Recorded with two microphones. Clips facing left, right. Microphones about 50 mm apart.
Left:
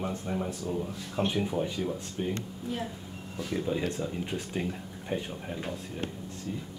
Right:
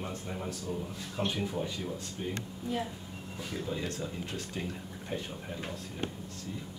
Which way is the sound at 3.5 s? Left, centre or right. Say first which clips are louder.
Left 6 dB; centre.